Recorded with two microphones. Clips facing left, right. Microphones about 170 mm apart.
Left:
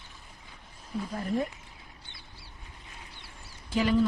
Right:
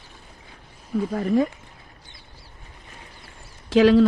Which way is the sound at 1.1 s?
90° right.